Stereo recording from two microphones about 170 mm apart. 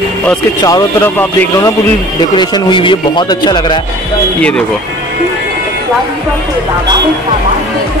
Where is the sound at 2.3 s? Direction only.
25° left (ahead or behind).